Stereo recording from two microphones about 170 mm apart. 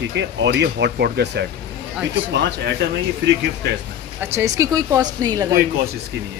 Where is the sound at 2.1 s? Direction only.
90° right.